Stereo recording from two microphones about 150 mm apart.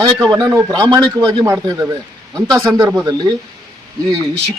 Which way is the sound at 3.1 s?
30° right (ahead or behind).